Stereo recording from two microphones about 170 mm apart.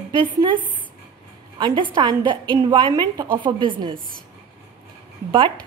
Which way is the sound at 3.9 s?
55° right (ahead or behind).